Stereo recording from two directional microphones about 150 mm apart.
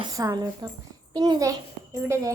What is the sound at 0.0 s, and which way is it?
A woman's voice, 25° right (ahead or behind).